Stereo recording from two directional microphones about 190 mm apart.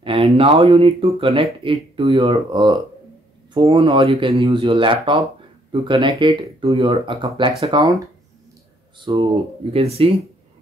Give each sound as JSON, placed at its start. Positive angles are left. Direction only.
{"t": 0.0, "sound": "a sound", "side_deg": -30}
{"t": 0.4, "sound": "speech", "side_deg": -30}
{"t": 9.0, "sound": "speech", "side_deg": -30}